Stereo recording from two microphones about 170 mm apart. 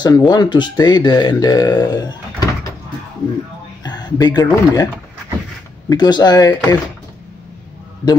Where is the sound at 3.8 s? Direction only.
25° left (ahead or behind).